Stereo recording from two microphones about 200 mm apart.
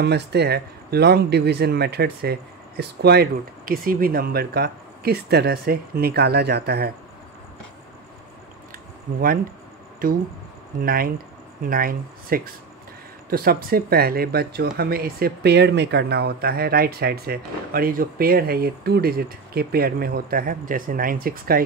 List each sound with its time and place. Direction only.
0.0 s speech: 55° right (ahead or behind)
10.8 s speech: 45° right (ahead or behind)